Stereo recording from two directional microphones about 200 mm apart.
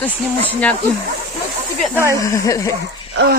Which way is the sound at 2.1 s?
15° left (ahead or behind).